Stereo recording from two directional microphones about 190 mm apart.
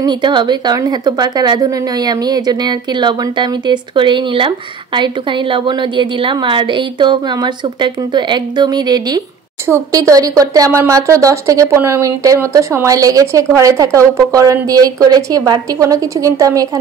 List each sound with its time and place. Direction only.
0.0 s a woman's voice: 25° right (ahead or behind)